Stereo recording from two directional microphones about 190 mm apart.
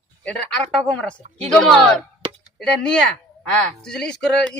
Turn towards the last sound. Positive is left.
turn(degrees=5)  # may be behind; listen again after turning